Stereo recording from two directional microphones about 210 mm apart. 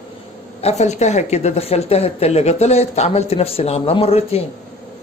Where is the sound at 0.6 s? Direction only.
30° left (ahead or behind).